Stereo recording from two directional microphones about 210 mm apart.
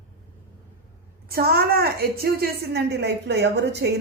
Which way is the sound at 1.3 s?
45° right (ahead or behind).